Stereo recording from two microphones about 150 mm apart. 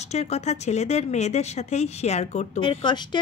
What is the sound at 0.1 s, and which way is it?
Speech, 50° left (ahead or behind).